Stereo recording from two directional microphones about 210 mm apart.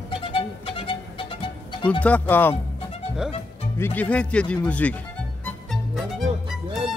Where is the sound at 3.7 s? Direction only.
10° left (ahead or behind).